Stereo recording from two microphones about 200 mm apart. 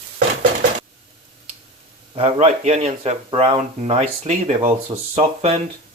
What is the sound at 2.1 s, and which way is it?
Speech, 30° right (ahead or behind).